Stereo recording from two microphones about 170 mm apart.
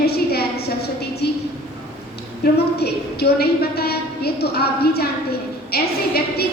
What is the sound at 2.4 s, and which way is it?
A woman's voice, 70° left (ahead or behind).